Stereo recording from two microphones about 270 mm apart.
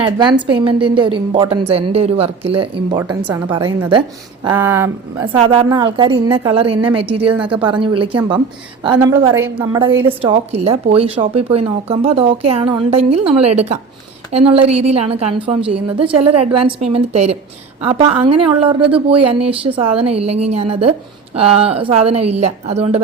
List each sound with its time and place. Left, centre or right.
0.0 s a woman's voice: centre
3.0 s a woman's voice: centre; by 23.0 s right